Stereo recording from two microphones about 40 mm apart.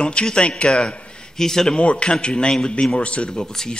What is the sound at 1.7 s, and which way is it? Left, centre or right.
Speech, left.